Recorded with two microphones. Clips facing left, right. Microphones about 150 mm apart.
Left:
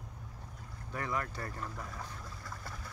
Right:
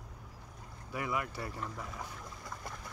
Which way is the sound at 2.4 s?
20° right (ahead or behind).